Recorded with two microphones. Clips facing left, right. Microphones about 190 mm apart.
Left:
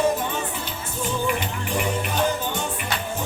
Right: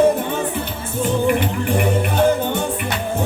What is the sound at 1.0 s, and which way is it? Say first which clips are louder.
Music: right 8 dB; 55° right (ahead or behind).